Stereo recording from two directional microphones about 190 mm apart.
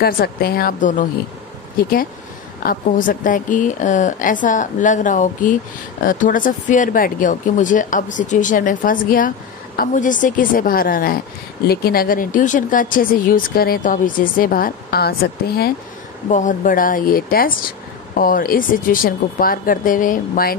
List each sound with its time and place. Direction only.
0.0 s speech: 55° left (ahead or behind)
2.6 s speech: 50° left (ahead or behind)
16.3 s speech: 40° left (ahead or behind)